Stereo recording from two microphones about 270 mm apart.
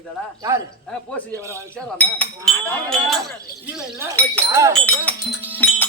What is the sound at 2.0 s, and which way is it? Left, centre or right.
Speech, centre.